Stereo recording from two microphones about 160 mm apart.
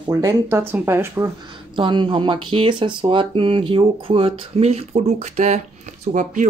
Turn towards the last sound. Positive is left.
turn(degrees=-50)  # may be behind; listen again after turning